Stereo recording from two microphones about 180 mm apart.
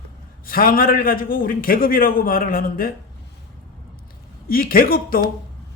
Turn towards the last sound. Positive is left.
turn(degrees=55)  # may be behind; listen again after turning